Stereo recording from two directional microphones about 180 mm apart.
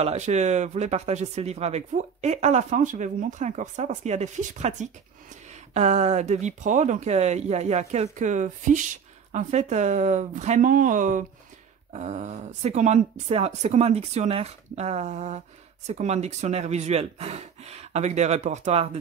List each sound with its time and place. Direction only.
0.0 s speech: 40° right (ahead or behind)